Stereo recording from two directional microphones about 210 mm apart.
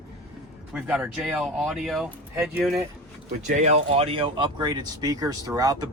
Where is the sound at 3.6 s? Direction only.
30° right (ahead or behind).